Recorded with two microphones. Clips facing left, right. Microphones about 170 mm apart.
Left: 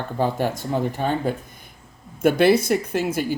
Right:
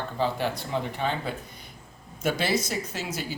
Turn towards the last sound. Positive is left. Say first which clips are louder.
# left 10 dB
turn(degrees=55)  # may be behind; listen again after turning